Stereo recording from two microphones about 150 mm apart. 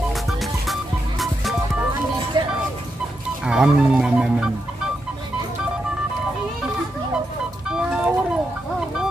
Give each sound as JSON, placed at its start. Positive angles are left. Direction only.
{"t": 0.3, "sound": "music", "side_deg": 0}
{"t": 2.3, "sound": "music", "side_deg": -30}
{"t": 3.4, "sound": "speech", "side_deg": -5}
{"t": 7.7, "sound": "music", "side_deg": -5}